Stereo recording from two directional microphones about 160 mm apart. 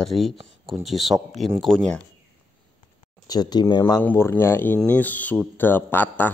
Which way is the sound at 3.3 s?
25° left (ahead or behind).